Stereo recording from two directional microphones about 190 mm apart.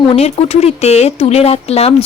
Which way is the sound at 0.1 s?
35° left (ahead or behind).